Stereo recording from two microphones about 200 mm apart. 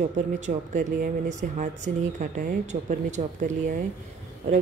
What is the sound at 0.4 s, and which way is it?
Speech, 45° right (ahead or behind).